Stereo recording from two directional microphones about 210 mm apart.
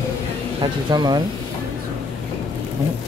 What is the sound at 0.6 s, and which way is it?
Speech, 20° right (ahead or behind).